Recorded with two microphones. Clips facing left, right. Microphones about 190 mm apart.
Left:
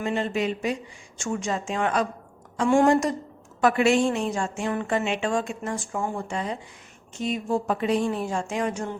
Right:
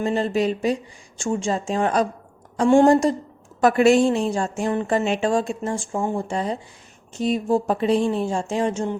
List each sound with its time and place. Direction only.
0.0 s speech: 35° right (ahead or behind)